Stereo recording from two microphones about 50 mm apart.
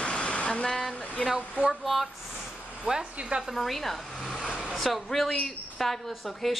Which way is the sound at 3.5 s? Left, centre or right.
Centre.